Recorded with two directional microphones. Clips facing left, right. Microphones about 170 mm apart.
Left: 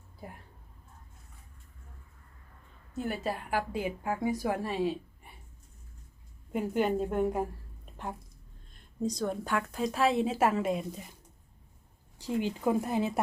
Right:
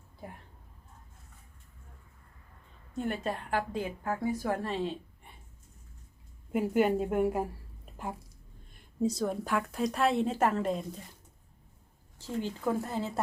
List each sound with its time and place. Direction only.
2.9 s a woman's voice: 5° left (ahead or behind)
6.5 s a woman's voice: 5° right (ahead or behind)
7.9 s a sound: 5° right (ahead or behind)
9.0 s a woman's voice: 5° right (ahead or behind); by 11.1 s 10° left (ahead or behind)
12.2 s a woman's voice: 15° left (ahead or behind)